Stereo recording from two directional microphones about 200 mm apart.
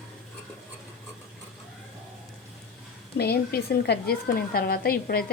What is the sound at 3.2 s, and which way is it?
A woman's voice, 50° left (ahead or behind).